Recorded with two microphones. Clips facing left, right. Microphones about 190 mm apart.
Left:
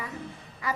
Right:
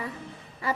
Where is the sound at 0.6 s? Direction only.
30° right (ahead or behind).